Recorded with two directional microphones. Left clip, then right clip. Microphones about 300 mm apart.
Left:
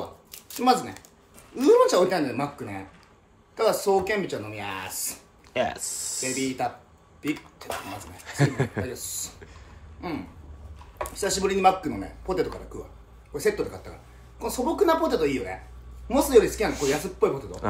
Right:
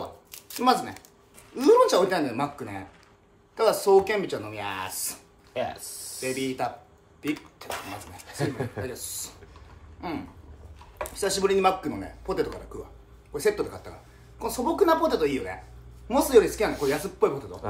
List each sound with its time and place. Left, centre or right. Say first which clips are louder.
0.0 s shuffling cards: even; centre
1.5 s speech: even; centre
5.5 s speech: left 4 dB; left
6.4 s speech: left 1 dB; centre
8.3 s speech: left 4 dB; left
8.8 s speech: left 1 dB; centre